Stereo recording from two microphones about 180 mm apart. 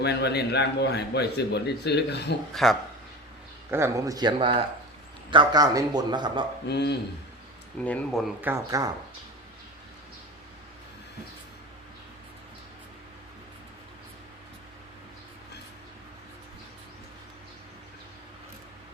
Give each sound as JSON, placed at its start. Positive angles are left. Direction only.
{"t": 0.0, "sound": "a man's voice", "side_deg": 70}
{"t": 2.5, "sound": "speech", "side_deg": 0}
{"t": 3.7, "sound": "a man's voice", "side_deg": -15}
{"t": 6.7, "sound": "a man's voice", "side_deg": 70}
{"t": 7.8, "sound": "speech", "side_deg": 5}
{"t": 8.4, "sound": "speech", "side_deg": -15}